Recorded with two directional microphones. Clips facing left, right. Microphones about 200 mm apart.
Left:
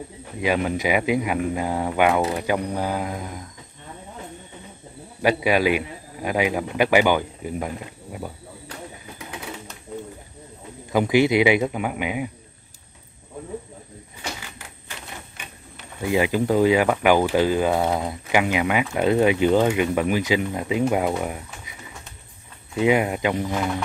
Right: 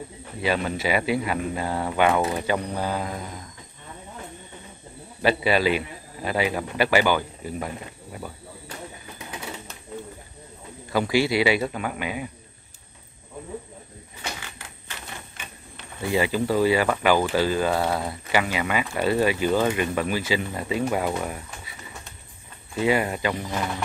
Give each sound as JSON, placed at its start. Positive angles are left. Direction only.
{"t": 0.4, "sound": "speech", "side_deg": 15}
{"t": 5.4, "sound": "speech", "side_deg": 15}
{"t": 10.9, "sound": "speech", "side_deg": 20}
{"t": 16.0, "sound": "speech", "side_deg": 15}
{"t": 22.8, "sound": "speech", "side_deg": 15}